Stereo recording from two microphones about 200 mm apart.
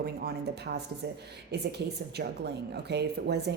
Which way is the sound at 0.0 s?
50° right (ahead or behind).